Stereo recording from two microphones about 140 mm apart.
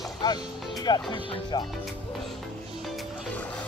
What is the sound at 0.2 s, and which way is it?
Speech, 30° left (ahead or behind).